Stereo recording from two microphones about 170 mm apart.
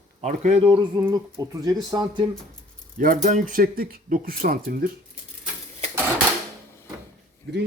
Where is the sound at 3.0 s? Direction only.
50° right (ahead or behind).